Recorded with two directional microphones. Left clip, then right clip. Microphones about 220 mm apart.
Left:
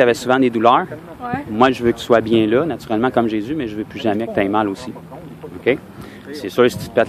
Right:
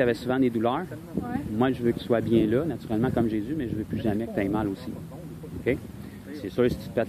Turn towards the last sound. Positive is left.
turn(degrees=15)  # may be behind; listen again after turning